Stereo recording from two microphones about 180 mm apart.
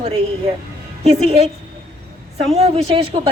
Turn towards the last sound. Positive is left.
turn(degrees=-30)  # may be behind; listen again after turning